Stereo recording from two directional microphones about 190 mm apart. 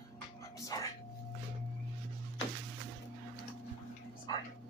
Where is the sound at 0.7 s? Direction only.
20° left (ahead or behind).